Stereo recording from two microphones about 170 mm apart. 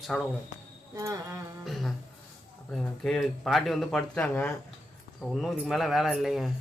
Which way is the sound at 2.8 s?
5° left (ahead or behind).